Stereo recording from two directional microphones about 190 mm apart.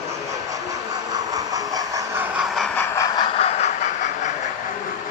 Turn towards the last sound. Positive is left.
turn(degrees=40)  # may be behind; listen again after turning